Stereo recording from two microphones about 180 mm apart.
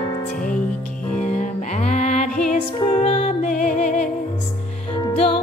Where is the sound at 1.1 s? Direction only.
40° left (ahead or behind).